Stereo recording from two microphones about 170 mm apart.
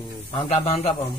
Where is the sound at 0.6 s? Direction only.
35° left (ahead or behind).